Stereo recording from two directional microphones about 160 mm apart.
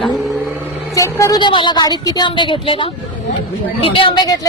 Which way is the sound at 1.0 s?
20° left (ahead or behind).